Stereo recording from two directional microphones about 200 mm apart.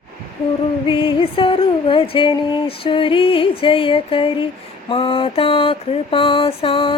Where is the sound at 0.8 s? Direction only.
25° left (ahead or behind).